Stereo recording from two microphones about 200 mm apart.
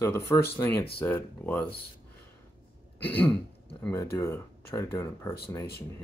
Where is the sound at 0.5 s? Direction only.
10° left (ahead or behind).